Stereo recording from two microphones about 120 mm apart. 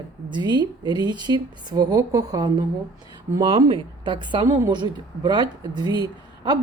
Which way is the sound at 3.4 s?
50° right (ahead or behind).